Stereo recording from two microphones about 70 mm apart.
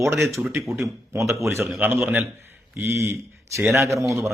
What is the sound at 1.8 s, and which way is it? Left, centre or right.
A man's voice, right.